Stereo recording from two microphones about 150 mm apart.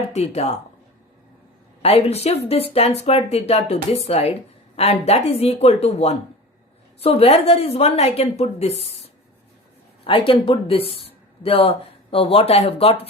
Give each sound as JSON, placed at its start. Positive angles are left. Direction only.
{"t": 0.1, "sound": "a woman's voice", "side_deg": 45}
{"t": 1.8, "sound": "a woman's voice", "side_deg": 40}
{"t": 10.0, "sound": "speech", "side_deg": 35}